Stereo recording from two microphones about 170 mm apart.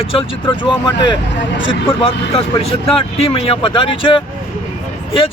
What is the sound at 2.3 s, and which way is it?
Speech, 35° left (ahead or behind).